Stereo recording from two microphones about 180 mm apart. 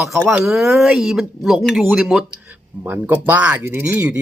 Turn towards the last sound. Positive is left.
turn(degrees=-10)  # may be behind; listen again after turning